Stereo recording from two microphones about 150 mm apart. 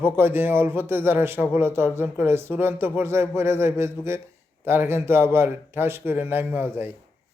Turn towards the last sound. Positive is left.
turn(degrees=-15)  # may be behind; listen again after turning